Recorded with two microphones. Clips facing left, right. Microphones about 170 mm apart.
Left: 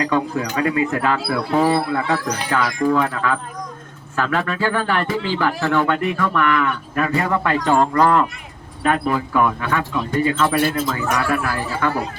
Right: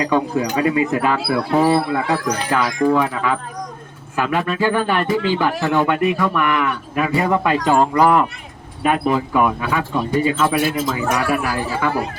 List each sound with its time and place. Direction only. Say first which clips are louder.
0.0 s speech: right 2 dB; 20° right (ahead or behind)